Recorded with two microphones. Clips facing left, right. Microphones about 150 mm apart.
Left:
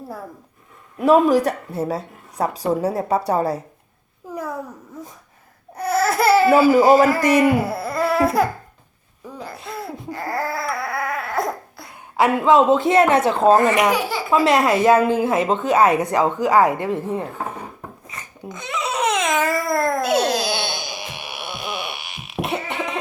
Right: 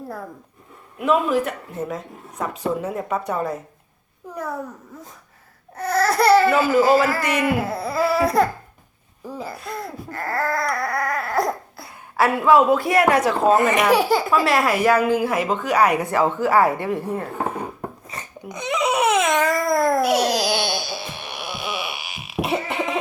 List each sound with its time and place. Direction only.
0.9 s a woman's voice: 35° left (ahead or behind)
5.7 s a sound: 10° left (ahead or behind)
6.7 s a man's voice: 15° left (ahead or behind)
7.2 s a woman's voice: 35° left (ahead or behind)
7.4 s a sound: 10° left (ahead or behind)
9.6 s baby cry: 5° left (ahead or behind)
12.1 s a woman's voice: 20° left (ahead or behind)
18.1 s a sound: 35° right (ahead or behind)
18.4 s babbling: 20° right (ahead or behind); by 20.0 s centre (ahead or behind)
20.1 s music: 25° left (ahead or behind); by 23.0 s centre (ahead or behind)